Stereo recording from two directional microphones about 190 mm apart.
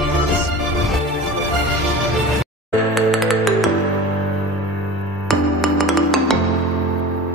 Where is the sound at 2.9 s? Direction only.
Centre (ahead or behind).